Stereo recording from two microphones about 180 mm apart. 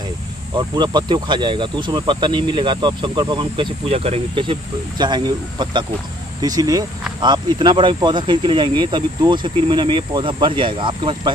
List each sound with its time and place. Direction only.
0.6 s speech: 25° right (ahead or behind)